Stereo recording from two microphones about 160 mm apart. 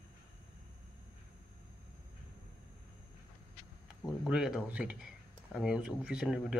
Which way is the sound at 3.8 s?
Centre (ahead or behind).